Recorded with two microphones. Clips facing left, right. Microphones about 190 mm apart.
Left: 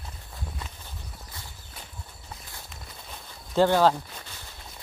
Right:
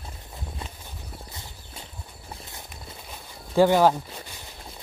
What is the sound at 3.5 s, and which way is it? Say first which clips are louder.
Speech: right 2 dB; 10° right (ahead or behind).